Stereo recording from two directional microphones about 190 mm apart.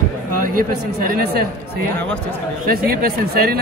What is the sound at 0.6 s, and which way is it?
Speech, 55° right (ahead or behind).